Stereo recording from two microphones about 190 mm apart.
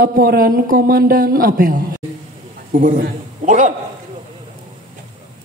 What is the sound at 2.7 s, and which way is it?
A man's voice, 40° right (ahead or behind).